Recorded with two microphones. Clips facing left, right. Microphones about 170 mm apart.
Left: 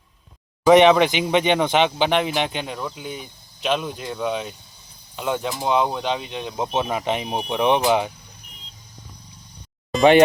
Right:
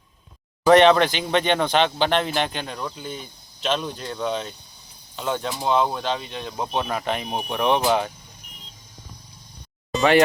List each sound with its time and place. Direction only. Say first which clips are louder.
0.7 s speech: left 1 dB; 15° left (ahead or behind)